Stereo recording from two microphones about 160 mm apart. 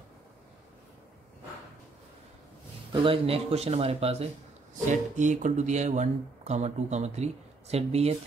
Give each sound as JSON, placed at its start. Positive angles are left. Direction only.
{"t": 2.9, "sound": "speech", "side_deg": -35}